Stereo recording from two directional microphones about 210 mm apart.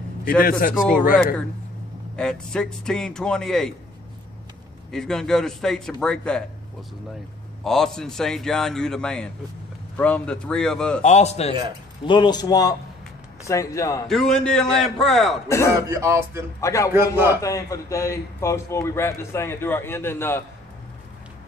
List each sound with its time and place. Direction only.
0.4 s a man's voice: 45° left (ahead or behind)
2.1 s a man's voice: 5° left (ahead or behind)
4.9 s a man's voice: centre (ahead or behind)
7.6 s a man's voice: centre (ahead or behind)
11.0 s a man's voice: 35° left (ahead or behind); by 14.0 s 15° left (ahead or behind)
14.0 s a man's voice: centre (ahead or behind)
15.4 s a man's voice: 15° left (ahead or behind)
15.9 s speech: 15° right (ahead or behind)
16.6 s a man's voice: 15° left (ahead or behind)
16.9 s speech: 10° right (ahead or behind)
17.4 s a man's voice: 15° left (ahead or behind)